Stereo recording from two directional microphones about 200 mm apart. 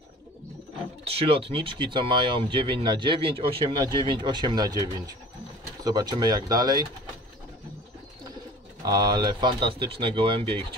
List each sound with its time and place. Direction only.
1.0 s speech: 30° right (ahead or behind)
8.8 s speech: 20° right (ahead or behind)